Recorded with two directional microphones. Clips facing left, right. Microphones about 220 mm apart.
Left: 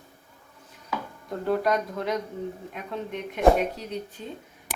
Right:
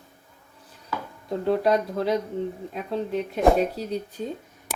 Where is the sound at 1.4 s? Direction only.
30° right (ahead or behind).